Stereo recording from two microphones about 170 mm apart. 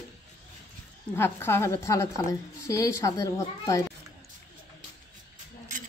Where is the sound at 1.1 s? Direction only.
15° left (ahead or behind).